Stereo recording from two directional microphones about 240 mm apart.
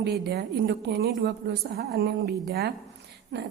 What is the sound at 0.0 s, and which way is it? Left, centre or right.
A woman's voice, right.